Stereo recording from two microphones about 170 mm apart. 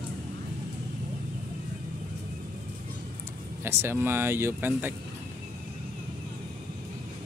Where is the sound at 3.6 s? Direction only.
15° right (ahead or behind).